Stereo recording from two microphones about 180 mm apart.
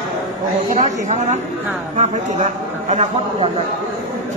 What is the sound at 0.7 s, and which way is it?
Speech, 40° right (ahead or behind).